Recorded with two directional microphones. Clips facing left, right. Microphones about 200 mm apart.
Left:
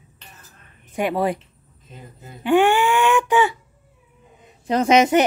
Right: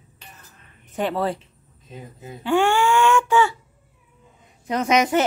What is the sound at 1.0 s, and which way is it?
Speech, 15° left (ahead or behind).